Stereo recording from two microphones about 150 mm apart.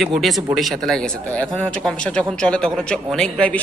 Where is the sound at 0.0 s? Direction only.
Centre (ahead or behind).